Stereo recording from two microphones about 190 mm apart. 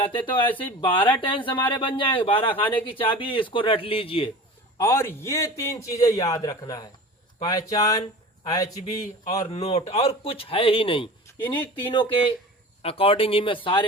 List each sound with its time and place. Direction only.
0.4 s a man's voice: 10° left (ahead or behind)
0.8 s speech: 25° left (ahead or behind)
4.8 s a man's voice: 15° left (ahead or behind)
9.5 s speech: 35° left (ahead or behind)
11.4 s a man's voice: 10° left (ahead or behind)
11.9 s speech: 25° left (ahead or behind)